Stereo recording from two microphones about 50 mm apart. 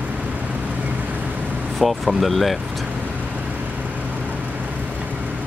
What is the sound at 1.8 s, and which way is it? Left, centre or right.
Speech, centre.